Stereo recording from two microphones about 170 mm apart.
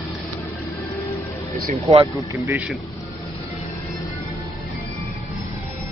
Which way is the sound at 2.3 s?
20° right (ahead or behind).